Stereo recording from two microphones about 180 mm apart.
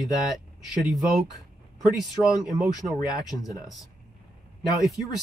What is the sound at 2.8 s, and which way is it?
Speech, 15° right (ahead or behind).